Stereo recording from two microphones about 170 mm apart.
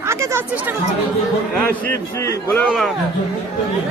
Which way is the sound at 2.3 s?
10° left (ahead or behind).